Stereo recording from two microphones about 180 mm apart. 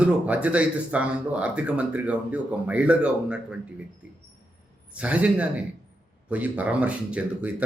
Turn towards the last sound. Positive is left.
turn(degrees=-5)  # may be behind; listen again after turning